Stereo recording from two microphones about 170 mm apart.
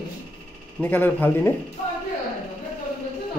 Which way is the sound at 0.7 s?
10° left (ahead or behind).